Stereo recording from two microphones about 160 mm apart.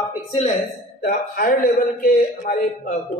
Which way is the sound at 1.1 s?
60° left (ahead or behind).